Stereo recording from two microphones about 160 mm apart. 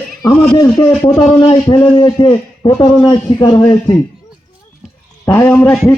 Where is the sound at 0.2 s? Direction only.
20° left (ahead or behind).